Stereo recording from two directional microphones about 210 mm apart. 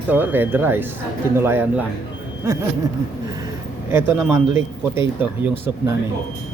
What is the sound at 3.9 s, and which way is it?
Speech, 10° right (ahead or behind).